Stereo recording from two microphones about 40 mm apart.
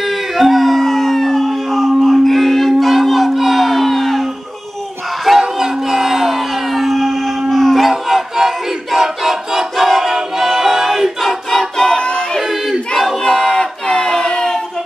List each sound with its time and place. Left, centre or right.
0.0 s howl: centre
5.4 s crowd: centre
7.9 s battle cry: centre
11.5 s music: centre
12.0 s music: left
12.4 s battle cry: centre
13.2 s music: centre